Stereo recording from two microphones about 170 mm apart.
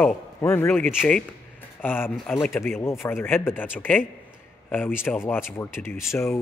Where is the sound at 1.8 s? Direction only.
10° left (ahead or behind).